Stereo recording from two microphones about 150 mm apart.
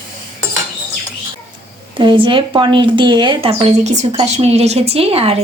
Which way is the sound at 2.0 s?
35° right (ahead or behind).